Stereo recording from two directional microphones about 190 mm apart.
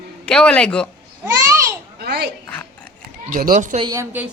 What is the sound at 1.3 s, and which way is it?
Babbling, 15° right (ahead or behind).